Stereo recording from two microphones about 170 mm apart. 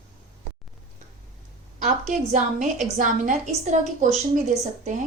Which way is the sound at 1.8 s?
45° right (ahead or behind).